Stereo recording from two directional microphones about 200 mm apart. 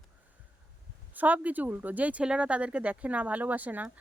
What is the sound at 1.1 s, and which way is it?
Speech, 10° right (ahead or behind).